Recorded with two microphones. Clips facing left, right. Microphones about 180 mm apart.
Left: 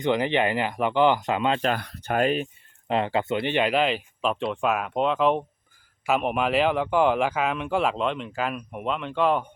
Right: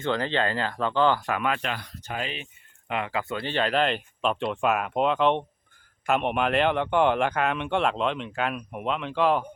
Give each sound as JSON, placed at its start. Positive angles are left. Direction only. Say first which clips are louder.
{"t": 0.0, "sound": "speech", "louder": "left 3 dB", "side_deg": 15}
{"t": 1.6, "sound": "speech", "louder": "left 7 dB", "side_deg": 55}
{"t": 2.8, "sound": "speech", "louder": "left 5 dB", "side_deg": 30}